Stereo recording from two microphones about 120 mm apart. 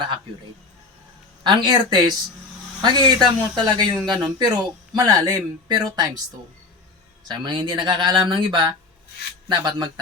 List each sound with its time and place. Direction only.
1.5 s speech: 40° right (ahead or behind)
7.3 s speech: 40° right (ahead or behind)
9.5 s speech: 40° right (ahead or behind)